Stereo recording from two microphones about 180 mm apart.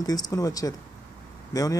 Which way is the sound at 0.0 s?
20° left (ahead or behind).